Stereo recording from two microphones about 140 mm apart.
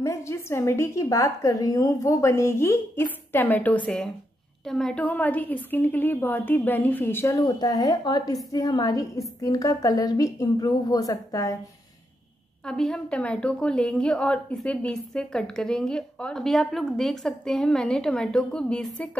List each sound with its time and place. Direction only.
0.0 s a woman's voice: 20° left (ahead or behind)
12.6 s a woman's voice: 5° left (ahead or behind)